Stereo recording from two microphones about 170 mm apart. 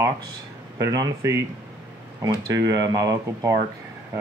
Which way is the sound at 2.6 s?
20° right (ahead or behind).